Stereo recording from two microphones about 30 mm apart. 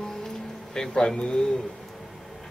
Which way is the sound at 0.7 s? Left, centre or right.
Centre.